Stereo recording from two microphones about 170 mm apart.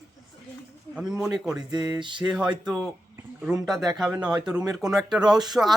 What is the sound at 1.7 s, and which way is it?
Speech, 20° right (ahead or behind).